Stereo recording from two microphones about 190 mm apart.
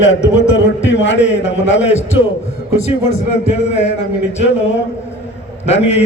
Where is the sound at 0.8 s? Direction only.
70° left (ahead or behind).